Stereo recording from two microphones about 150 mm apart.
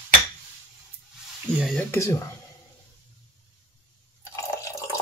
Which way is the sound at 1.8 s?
20° left (ahead or behind).